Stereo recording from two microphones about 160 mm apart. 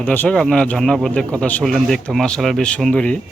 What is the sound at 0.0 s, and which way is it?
Speech, 10° left (ahead or behind).